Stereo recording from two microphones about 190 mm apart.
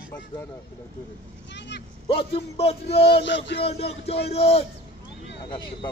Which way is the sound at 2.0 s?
30° left (ahead or behind).